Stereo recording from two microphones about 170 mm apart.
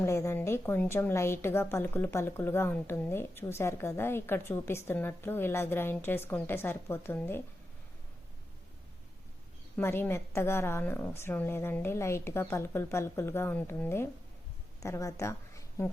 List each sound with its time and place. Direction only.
0.0 s a woman's voice: 15° left (ahead or behind)
9.7 s a woman's voice: 15° left (ahead or behind)